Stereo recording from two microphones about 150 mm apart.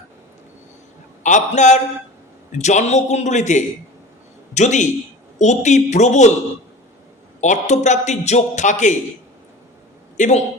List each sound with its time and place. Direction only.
1.2 s a man's voice: 55° left (ahead or behind)
7.4 s a man's voice: 55° left (ahead or behind)
10.2 s a man's voice: 50° left (ahead or behind)